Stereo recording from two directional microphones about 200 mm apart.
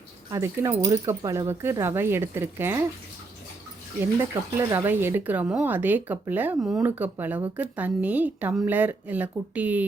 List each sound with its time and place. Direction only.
0.3 s speech: 15° right (ahead or behind)
4.7 s speech: 10° right (ahead or behind)